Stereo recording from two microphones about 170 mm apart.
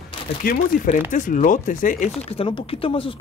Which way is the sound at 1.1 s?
50° left (ahead or behind).